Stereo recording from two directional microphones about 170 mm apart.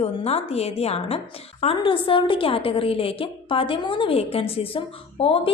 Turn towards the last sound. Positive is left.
turn(degrees=30)  # may be behind; listen again after turning